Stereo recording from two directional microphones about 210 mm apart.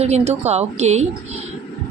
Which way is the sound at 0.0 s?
30° right (ahead or behind).